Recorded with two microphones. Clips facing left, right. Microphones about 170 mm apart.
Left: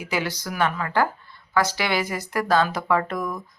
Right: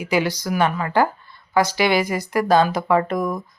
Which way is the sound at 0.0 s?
15° right (ahead or behind).